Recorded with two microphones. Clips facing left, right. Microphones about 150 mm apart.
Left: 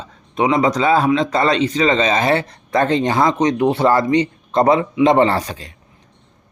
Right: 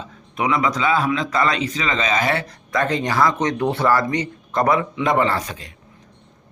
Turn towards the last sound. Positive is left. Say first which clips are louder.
# left 5 dB
turn(degrees=30)  # may be behind; listen again after turning